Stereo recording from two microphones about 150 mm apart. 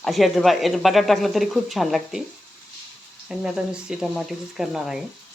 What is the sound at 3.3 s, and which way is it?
Speech, 5° right (ahead or behind).